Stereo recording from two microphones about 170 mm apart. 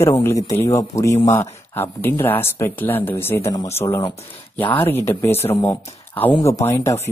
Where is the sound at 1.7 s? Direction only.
15° left (ahead or behind).